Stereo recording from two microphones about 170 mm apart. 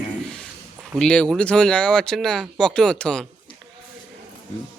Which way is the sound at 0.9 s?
5° left (ahead or behind).